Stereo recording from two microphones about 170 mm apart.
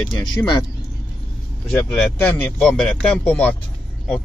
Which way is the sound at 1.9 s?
10° left (ahead or behind).